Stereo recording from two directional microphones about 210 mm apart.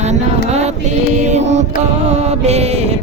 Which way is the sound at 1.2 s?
35° right (ahead or behind).